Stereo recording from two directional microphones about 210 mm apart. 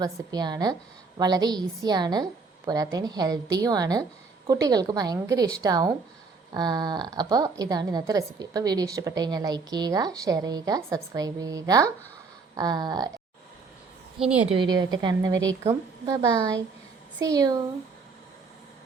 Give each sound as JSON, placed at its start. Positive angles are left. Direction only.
{"t": 0.0, "sound": "a woman's voice", "side_deg": -20}
{"t": 14.3, "sound": "a woman's voice", "side_deg": -25}